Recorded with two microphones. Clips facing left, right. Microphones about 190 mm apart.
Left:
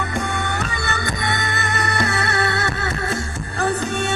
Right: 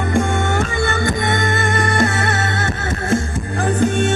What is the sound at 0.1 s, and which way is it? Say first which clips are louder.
Music: right 7 dB; 50° right (ahead or behind).